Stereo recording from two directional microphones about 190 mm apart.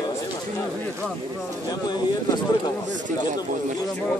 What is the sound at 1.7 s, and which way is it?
Speech, 20° left (ahead or behind).